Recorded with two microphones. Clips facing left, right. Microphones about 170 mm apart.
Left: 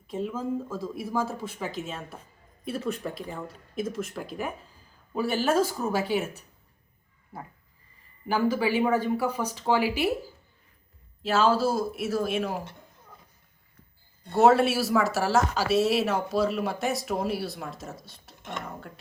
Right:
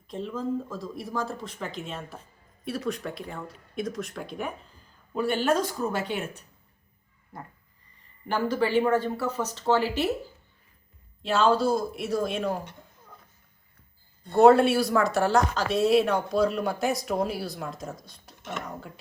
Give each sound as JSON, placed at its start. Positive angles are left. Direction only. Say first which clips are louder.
{"t": 0.1, "sound": "speech", "louder": "even", "side_deg": 10}
{"t": 11.2, "sound": "speech", "louder": "even", "side_deg": 5}
{"t": 14.3, "sound": "speech", "louder": "right 3 dB", "side_deg": 0}